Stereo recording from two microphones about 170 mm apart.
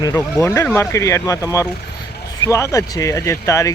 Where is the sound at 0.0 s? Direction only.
20° left (ahead or behind).